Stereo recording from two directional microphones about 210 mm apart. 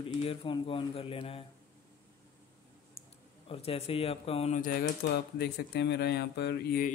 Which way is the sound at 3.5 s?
25° left (ahead or behind).